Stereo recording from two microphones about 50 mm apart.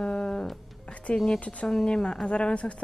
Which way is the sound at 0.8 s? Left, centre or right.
Left.